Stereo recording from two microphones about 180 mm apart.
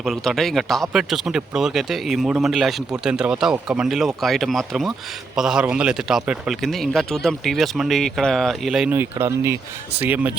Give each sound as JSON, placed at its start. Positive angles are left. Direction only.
{"t": 0.0, "sound": "speech", "side_deg": 0}